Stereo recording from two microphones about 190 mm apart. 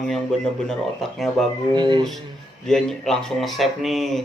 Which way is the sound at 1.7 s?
25° right (ahead or behind).